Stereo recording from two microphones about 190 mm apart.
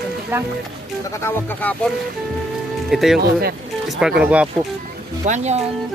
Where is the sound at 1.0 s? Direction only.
15° left (ahead or behind).